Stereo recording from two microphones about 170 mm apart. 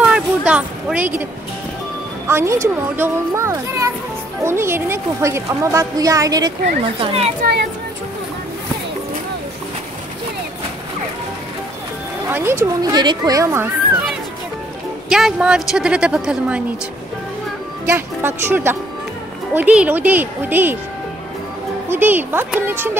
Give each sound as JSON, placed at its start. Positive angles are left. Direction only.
{"t": 0.1, "sound": "a sound", "side_deg": -5}
{"t": 2.2, "sound": "speech", "side_deg": -15}
{"t": 12.3, "sound": "speech", "side_deg": -15}
{"t": 15.0, "sound": "a woman's voice", "side_deg": 0}
{"t": 17.8, "sound": "speech", "side_deg": -15}
{"t": 21.9, "sound": "speech", "side_deg": -10}